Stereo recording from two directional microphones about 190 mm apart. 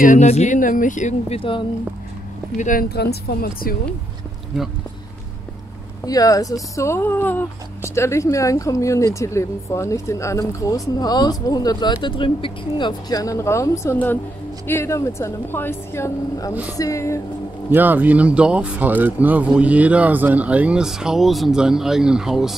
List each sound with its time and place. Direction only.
0.0 s speech: 40° left (ahead or behind)
2.5 s speech: 45° left (ahead or behind)
6.0 s speech: 20° left (ahead or behind)
17.6 s speech: 10° right (ahead or behind)